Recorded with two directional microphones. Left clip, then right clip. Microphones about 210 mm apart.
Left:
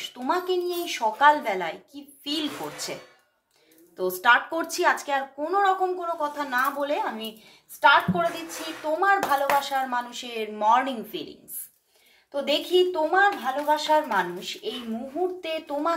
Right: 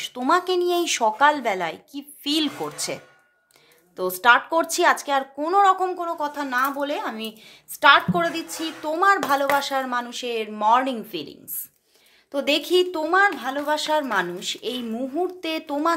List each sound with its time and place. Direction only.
0.0 s speech: 40° right (ahead or behind)
7.8 s speech: 55° right (ahead or behind); by 11.2 s 35° right (ahead or behind)
12.3 s speech: 50° right (ahead or behind)